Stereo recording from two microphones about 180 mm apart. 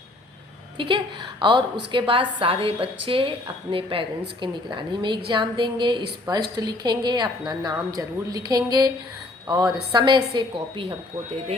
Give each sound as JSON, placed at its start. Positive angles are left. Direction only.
{"t": 0.8, "sound": "a woman's voice", "side_deg": -25}